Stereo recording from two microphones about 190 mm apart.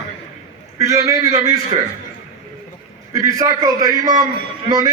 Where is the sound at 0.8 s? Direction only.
15° right (ahead or behind).